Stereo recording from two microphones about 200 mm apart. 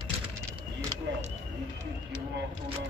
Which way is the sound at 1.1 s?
65° right (ahead or behind).